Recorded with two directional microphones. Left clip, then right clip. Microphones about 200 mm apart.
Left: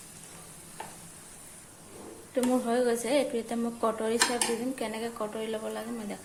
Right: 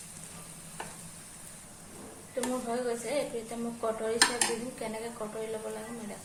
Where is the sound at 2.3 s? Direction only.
50° left (ahead or behind).